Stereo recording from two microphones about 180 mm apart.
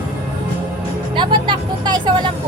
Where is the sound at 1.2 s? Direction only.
25° right (ahead or behind).